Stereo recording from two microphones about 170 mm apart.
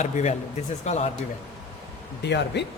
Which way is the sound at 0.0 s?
45° left (ahead or behind).